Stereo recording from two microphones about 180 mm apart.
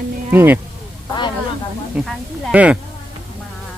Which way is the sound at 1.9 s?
Centre (ahead or behind).